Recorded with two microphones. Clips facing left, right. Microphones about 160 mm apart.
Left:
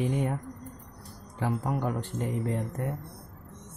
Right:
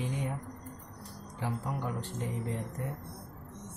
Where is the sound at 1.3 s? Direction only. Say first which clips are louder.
Left 6 dB; 55° left (ahead or behind).